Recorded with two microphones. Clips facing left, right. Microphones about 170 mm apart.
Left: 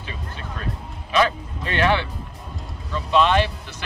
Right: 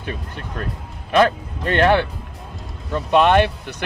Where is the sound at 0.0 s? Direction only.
55° right (ahead or behind).